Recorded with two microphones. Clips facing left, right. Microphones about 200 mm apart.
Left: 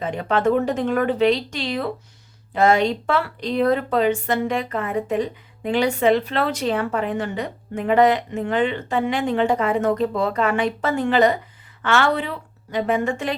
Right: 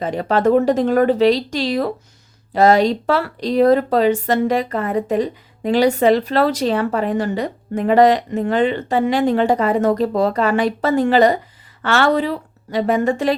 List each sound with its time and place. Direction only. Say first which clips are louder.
0.0 s speech: right 4 dB; 35° right (ahead or behind)